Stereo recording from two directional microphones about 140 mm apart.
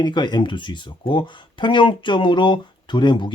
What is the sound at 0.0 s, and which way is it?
Speech, 30° left (ahead or behind).